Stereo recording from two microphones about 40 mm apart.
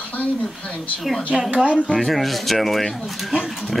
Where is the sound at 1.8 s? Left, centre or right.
Centre.